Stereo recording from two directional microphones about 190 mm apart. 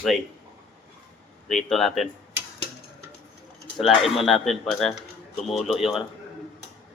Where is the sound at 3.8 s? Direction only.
Centre (ahead or behind).